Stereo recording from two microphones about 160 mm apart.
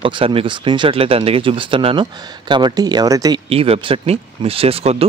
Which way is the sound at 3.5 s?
35° right (ahead or behind).